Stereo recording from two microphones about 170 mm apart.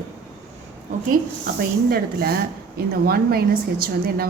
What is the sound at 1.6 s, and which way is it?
A woman's voice, 65° right (ahead or behind).